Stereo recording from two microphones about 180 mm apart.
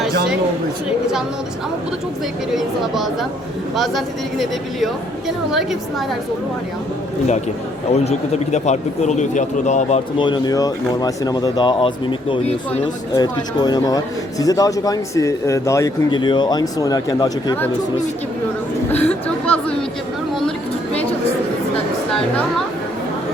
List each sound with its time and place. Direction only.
2.6 s speech: centre (ahead or behind)
7.9 s a man's voice: 35° left (ahead or behind)
10.2 s a man's voice: 25° left (ahead or behind)
13.1 s a man's voice: 20° left (ahead or behind)
18.9 s speech: 10° left (ahead or behind)